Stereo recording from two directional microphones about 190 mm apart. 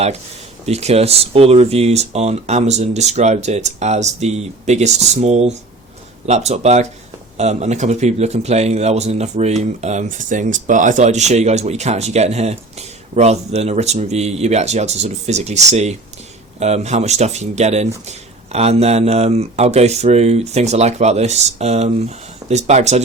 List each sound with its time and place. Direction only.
0.6 s a man's voice: 35° right (ahead or behind)